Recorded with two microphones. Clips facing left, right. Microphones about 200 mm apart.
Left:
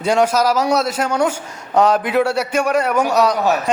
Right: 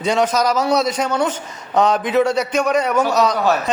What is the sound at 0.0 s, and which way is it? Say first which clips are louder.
A man's voice: left 2 dB; 10° left (ahead or behind).